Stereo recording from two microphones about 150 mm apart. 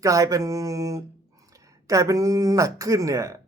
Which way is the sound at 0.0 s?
20° right (ahead or behind).